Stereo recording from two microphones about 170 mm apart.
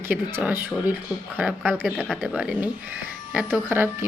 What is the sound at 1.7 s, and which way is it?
Speech, 5° left (ahead or behind).